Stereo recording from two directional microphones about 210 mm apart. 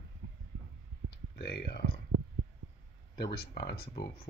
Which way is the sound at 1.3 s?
50° left (ahead or behind).